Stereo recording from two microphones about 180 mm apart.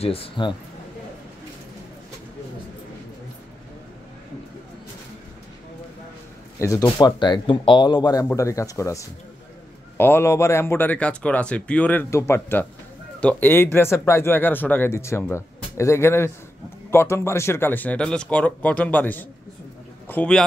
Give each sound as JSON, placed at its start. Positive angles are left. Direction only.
{"t": 0.0, "sound": "a man's voice", "side_deg": 30}
{"t": 6.6, "sound": "a man's voice", "side_deg": 15}